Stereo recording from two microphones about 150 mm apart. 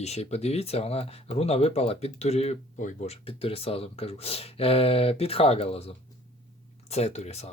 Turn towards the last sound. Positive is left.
turn(degrees=45)  # may be behind; listen again after turning